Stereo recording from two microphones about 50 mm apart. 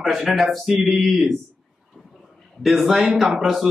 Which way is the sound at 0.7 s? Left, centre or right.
Centre.